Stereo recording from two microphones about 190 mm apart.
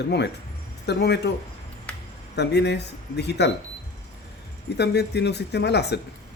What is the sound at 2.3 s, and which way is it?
Speech, 60° left (ahead or behind).